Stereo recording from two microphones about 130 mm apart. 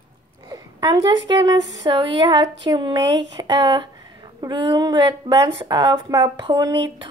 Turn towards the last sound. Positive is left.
turn(degrees=-30)  # may be behind; listen again after turning